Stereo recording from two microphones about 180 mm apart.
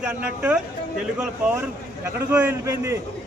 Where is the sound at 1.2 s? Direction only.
5° right (ahead or behind).